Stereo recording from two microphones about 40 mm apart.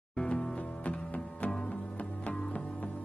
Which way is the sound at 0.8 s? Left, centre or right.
Left.